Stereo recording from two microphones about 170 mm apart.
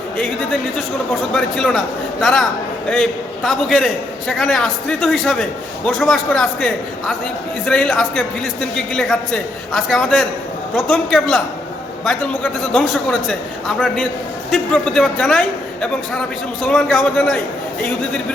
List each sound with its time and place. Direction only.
1.3 s a man's voice: 5° left (ahead or behind)